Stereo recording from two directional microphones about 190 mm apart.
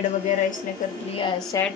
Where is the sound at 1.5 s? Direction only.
15° left (ahead or behind).